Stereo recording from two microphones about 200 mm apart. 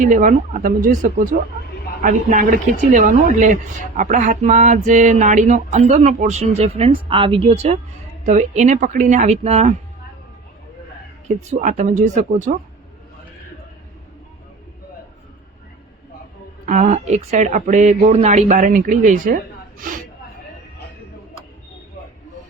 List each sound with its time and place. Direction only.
0.0 s a woman's voice: 40° right (ahead or behind)
11.3 s a woman's voice: 40° right (ahead or behind)
16.6 s a woman's voice: 40° right (ahead or behind)